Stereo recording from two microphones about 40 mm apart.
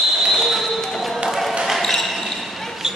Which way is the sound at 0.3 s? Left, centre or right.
Centre.